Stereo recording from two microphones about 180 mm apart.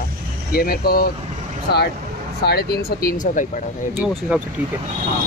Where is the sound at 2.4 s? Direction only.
60° left (ahead or behind).